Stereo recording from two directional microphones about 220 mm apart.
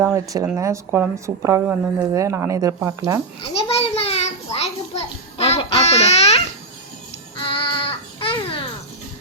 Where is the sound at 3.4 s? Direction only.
25° left (ahead or behind).